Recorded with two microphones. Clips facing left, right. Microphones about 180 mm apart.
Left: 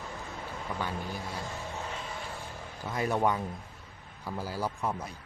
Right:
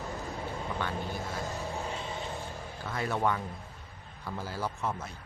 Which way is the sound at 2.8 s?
15° left (ahead or behind).